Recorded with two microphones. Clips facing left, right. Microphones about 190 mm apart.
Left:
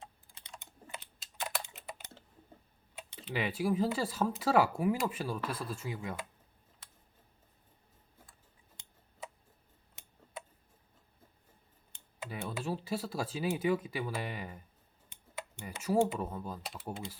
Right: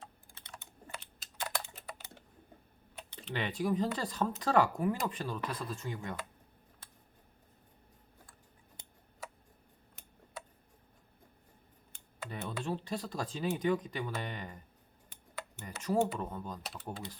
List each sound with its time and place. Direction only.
0.0 s typing: 20° left (ahead or behind)
3.2 s speech: 5° left (ahead or behind)
12.3 s speech: 5° left (ahead or behind)
15.6 s speech: 10° left (ahead or behind)